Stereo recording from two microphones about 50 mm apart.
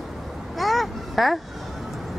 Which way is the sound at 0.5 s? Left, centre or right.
Centre.